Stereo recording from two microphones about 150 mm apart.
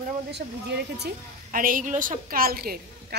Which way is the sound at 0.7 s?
90° right.